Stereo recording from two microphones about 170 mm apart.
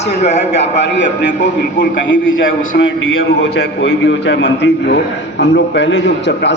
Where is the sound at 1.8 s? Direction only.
90° left.